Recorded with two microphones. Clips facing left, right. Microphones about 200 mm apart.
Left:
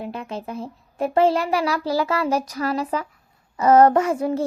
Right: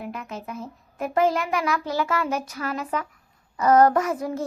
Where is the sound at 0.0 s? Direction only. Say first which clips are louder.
Left 4 dB; 30° left (ahead or behind).